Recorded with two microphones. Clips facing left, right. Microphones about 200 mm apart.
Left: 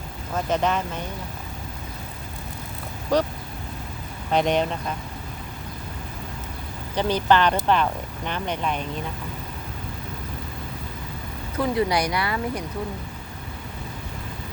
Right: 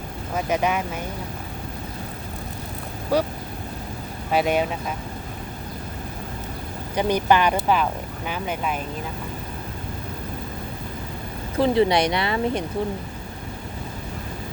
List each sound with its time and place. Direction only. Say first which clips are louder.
0.3 s speech: even; 10° right (ahead or behind)
3.1 s speech: even; 10° right (ahead or behind)
4.3 s speech: even; 5° right (ahead or behind)
6.9 s speech: right 1 dB; 10° right (ahead or behind)
11.5 s speech: right 4 dB; 30° right (ahead or behind)